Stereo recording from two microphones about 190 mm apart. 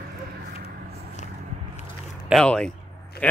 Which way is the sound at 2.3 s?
5° left (ahead or behind).